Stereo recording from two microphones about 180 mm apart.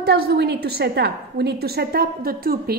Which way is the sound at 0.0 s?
60° right (ahead or behind).